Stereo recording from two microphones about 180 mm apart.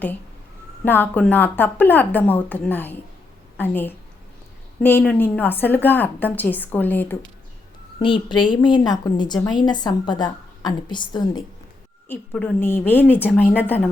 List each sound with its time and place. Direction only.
0.9 s a woman's voice: 10° left (ahead or behind)
7.9 s a woman's voice: 25° left (ahead or behind)
12.0 s a woman's voice: 10° left (ahead or behind)